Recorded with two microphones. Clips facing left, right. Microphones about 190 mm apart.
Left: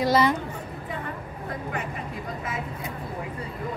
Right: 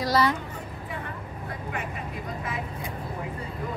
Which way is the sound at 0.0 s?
25° left (ahead or behind).